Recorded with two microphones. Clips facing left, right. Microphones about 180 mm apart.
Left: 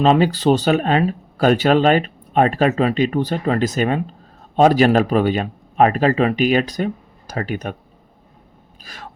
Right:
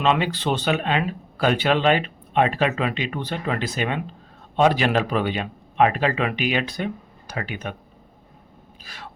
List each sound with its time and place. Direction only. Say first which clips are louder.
0.0 s speech: left 7 dB; 40° left (ahead or behind)
8.8 s vehicle: left 4 dB; 45° left (ahead or behind)